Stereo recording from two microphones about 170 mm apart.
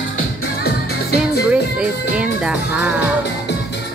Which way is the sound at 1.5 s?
5° right (ahead or behind).